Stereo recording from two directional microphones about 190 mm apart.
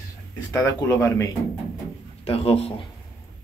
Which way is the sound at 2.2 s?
30° left (ahead or behind).